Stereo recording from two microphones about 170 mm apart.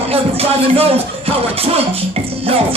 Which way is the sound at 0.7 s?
35° right (ahead or behind).